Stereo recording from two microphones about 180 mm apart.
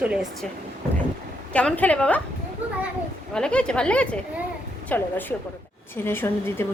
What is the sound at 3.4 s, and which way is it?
A woman's voice, 5° left (ahead or behind).